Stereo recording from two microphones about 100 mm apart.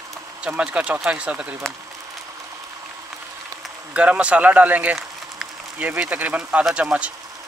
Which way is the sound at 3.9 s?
15° right (ahead or behind).